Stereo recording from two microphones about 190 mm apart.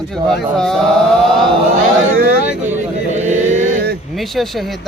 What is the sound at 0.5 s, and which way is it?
Chant, 5° left (ahead or behind).